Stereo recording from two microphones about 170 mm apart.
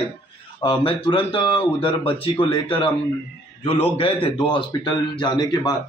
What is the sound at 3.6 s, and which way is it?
A man's voice, 35° left (ahead or behind).